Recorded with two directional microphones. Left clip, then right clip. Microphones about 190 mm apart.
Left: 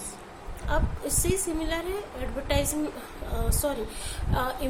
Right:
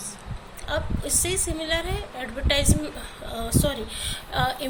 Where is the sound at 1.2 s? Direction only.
15° left (ahead or behind).